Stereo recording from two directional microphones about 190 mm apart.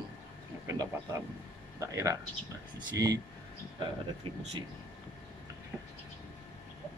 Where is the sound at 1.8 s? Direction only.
15° right (ahead or behind).